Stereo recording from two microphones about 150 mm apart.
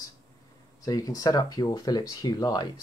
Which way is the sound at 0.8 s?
25° left (ahead or behind).